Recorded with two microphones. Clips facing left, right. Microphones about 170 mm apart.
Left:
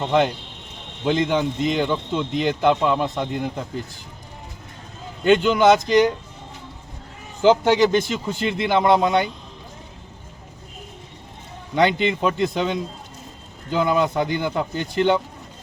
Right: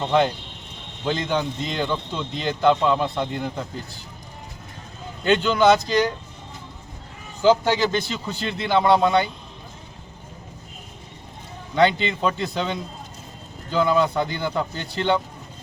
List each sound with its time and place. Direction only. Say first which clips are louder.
0.0 s a man's voice: left 1 dB; 10° left (ahead or behind)
5.2 s a man's voice: left 2 dB; 10° left (ahead or behind)
7.4 s a man's voice: left 3 dB; 20° left (ahead or behind)
11.7 s a man's voice: left 1 dB; 15° left (ahead or behind)